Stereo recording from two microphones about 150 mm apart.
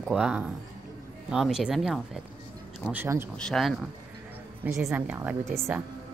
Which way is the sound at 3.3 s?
5° left (ahead or behind).